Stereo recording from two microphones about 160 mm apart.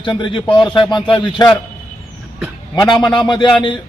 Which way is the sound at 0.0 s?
30° left (ahead or behind).